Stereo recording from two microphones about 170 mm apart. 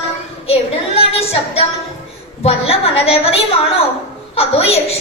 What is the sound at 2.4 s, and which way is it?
A woman's voice, 35° left (ahead or behind).